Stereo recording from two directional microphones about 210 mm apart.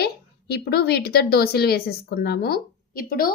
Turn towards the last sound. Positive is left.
turn(degrees=45)  # may be behind; listen again after turning